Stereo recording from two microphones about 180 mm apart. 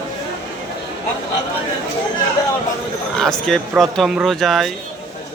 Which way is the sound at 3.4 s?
Centre (ahead or behind).